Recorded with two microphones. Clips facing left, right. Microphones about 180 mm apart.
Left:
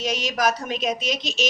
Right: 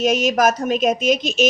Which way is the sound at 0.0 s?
50° right (ahead or behind).